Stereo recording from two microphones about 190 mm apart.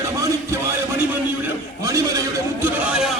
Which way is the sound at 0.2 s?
15° right (ahead or behind).